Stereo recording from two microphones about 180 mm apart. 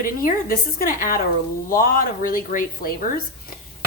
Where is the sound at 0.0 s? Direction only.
50° left (ahead or behind).